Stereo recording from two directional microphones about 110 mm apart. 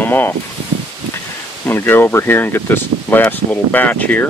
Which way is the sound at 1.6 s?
20° left (ahead or behind).